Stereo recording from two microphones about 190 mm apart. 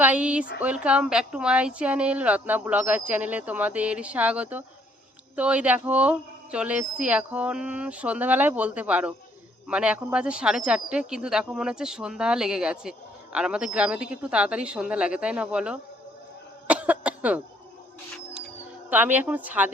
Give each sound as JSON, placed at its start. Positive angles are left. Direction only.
{"t": 0.0, "sound": "a woman's voice", "side_deg": -5}
{"t": 16.6, "sound": "cough", "side_deg": -5}
{"t": 18.9, "sound": "a woman's voice", "side_deg": -10}